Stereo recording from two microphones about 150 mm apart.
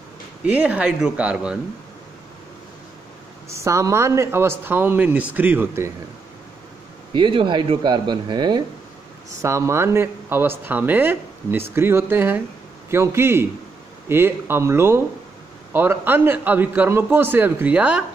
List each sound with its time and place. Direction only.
0.5 s speech: 10° right (ahead or behind)
3.4 s speech: 20° right (ahead or behind)
7.2 s speech: 35° right (ahead or behind)
9.4 s speech: 20° right (ahead or behind)